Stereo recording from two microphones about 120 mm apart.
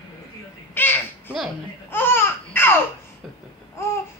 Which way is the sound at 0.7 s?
15° left (ahead or behind).